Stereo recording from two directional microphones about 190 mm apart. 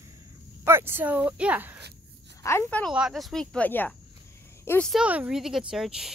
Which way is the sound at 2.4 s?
15° left (ahead or behind).